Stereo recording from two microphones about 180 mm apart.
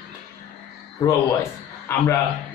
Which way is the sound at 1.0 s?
15° left (ahead or behind).